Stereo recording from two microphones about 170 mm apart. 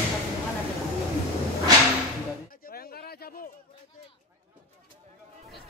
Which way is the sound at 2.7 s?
60° left (ahead or behind).